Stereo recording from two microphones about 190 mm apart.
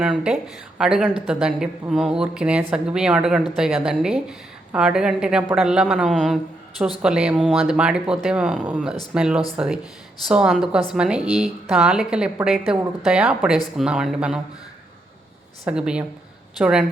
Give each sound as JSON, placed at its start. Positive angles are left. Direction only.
{"t": 0.0, "sound": "a woman's voice", "side_deg": -5}
{"t": 15.6, "sound": "a woman's voice", "side_deg": -5}